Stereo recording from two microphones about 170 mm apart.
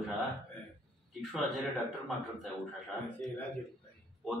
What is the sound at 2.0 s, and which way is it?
Speech, centre (ahead or behind).